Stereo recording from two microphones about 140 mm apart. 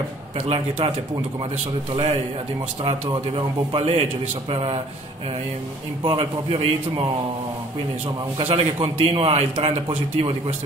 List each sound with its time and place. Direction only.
0.5 s a man's voice: 45° right (ahead or behind)
3.1 s a man's voice: 40° right (ahead or behind)
6.0 s a man's voice: 45° right (ahead or behind)
8.4 s a man's voice: 45° right (ahead or behind)